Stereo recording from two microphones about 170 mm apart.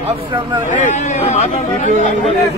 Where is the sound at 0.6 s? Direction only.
45° left (ahead or behind).